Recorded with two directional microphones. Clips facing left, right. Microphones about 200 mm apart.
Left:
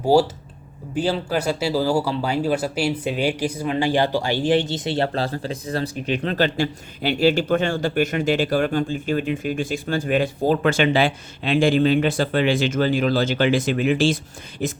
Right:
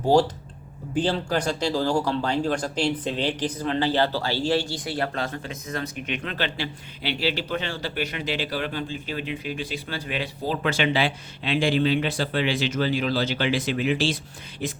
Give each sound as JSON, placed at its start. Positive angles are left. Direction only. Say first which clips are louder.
{"t": 0.1, "sound": "speech", "louder": "left 3 dB", "side_deg": 10}